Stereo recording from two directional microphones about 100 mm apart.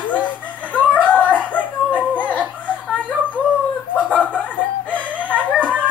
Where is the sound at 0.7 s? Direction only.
15° left (ahead or behind).